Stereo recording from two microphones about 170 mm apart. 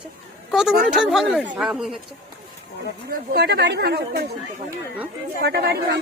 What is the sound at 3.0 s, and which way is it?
Speech, 65° right (ahead or behind).